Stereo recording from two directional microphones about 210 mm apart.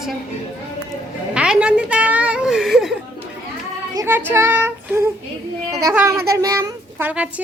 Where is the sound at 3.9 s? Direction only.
15° right (ahead or behind).